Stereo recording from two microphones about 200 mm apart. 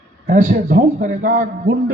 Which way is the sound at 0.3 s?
40° right (ahead or behind).